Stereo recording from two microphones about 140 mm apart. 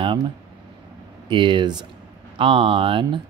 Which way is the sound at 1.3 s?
35° right (ahead or behind).